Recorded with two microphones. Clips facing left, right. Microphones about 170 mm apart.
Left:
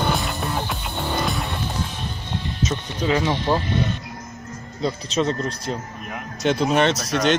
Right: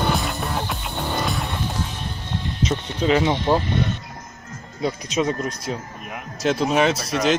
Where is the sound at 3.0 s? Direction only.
20° right (ahead or behind).